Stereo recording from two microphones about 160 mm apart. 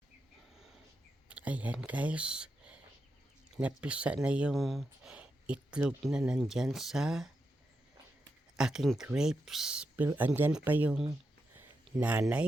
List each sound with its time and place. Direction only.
1.3 s speech: 10° right (ahead or behind)
8.5 s speech: 5° right (ahead or behind)
11.5 s a sound: 10° right (ahead or behind)